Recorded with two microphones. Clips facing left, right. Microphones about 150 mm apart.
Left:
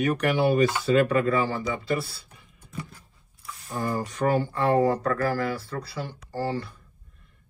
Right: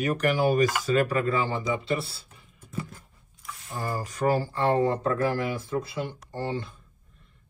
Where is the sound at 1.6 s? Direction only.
25° right (ahead or behind).